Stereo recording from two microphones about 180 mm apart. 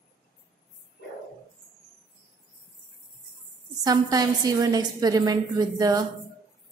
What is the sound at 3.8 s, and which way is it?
A woman's voice, 20° right (ahead or behind).